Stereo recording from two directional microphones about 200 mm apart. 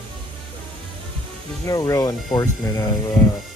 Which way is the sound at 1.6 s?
15° left (ahead or behind).